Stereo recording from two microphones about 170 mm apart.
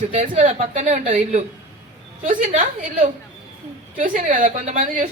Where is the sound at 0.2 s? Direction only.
45° right (ahead or behind).